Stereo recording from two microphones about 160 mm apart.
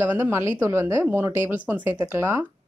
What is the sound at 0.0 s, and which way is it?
Speech, 15° right (ahead or behind).